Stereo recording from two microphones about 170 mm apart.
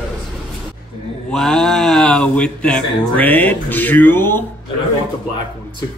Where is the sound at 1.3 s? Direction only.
Centre (ahead or behind).